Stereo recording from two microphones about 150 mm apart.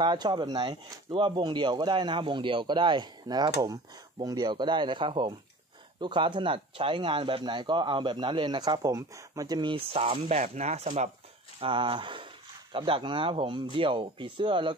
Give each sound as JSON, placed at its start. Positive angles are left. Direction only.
{"t": 0.0, "sound": "speech", "side_deg": -30}
{"t": 11.6, "sound": "speech", "side_deg": -35}